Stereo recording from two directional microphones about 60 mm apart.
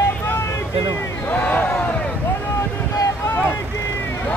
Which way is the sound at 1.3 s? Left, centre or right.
Left.